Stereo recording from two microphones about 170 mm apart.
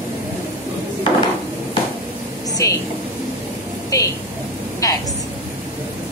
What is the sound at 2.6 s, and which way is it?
Speech, 20° left (ahead or behind).